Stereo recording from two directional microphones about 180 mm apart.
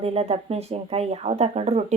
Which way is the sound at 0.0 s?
35° right (ahead or behind).